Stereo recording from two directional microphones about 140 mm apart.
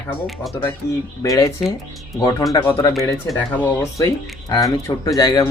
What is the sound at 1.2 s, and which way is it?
Speech, 25° left (ahead or behind).